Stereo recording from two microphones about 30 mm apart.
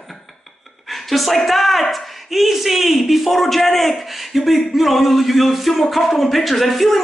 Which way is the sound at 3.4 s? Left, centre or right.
Centre.